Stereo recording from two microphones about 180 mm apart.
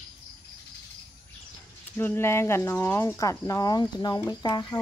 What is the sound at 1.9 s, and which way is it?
Speech, 10° left (ahead or behind).